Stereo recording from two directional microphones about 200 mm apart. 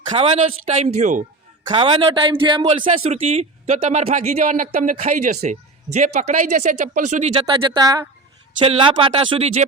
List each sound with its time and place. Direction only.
0.1 s speech: 30° right (ahead or behind)
7.3 s speech: 25° right (ahead or behind)